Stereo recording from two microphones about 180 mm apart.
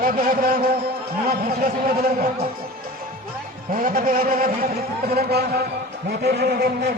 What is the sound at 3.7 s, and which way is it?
A man's voice, 50° right (ahead or behind).